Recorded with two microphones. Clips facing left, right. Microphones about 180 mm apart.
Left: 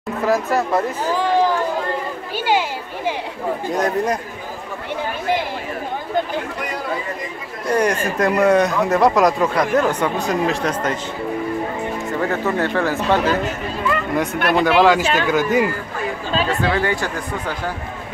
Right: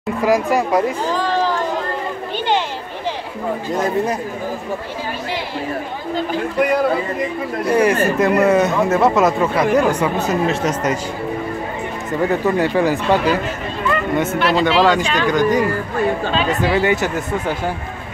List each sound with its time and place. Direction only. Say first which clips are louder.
0.2 s speech: right 2 dB; 15° right (ahead or behind)
1.1 s a sound: left 5 dB; 10° left (ahead or behind)
3.7 s speech: right 1 dB; 5° right (ahead or behind)
7.6 s speech: right 3 dB; 5° right (ahead or behind)
12.1 s speech: right 5 dB; 15° right (ahead or behind)
13.8 s a sound: right 2 dB; centre (ahead or behind)
14.6 s speech: left 2 dB; centre (ahead or behind)
16.4 s speech: right 4 dB; 20° right (ahead or behind)